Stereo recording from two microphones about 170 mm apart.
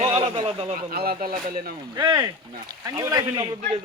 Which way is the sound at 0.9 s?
60° right (ahead or behind).